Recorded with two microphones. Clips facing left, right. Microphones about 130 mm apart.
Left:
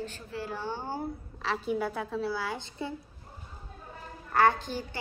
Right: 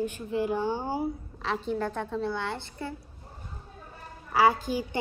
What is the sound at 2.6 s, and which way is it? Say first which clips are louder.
Speech: even; 20° left (ahead or behind).